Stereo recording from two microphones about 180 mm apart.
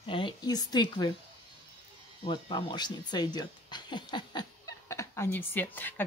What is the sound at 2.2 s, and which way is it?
Speech, 25° left (ahead or behind).